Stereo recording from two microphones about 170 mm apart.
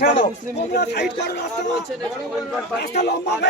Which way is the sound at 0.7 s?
75° left (ahead or behind).